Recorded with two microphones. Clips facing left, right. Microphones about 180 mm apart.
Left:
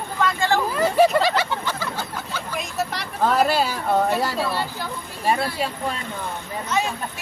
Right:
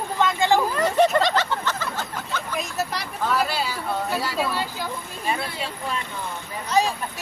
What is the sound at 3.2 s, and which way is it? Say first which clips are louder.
Speech: left 5 dB; 50° left (ahead or behind).